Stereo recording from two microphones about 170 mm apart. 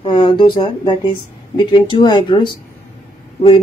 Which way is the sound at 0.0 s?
25° left (ahead or behind).